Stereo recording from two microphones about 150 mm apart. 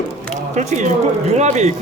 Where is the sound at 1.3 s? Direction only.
50° right (ahead or behind).